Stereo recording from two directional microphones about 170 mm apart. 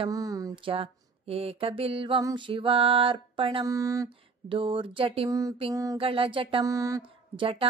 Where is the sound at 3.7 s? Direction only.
20° right (ahead or behind).